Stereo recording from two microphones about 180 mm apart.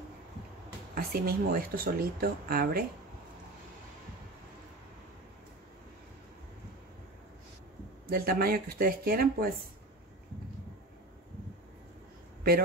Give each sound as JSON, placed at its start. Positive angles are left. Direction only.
{"t": 0.9, "sound": "speech", "side_deg": -55}
{"t": 8.1, "sound": "speech", "side_deg": -55}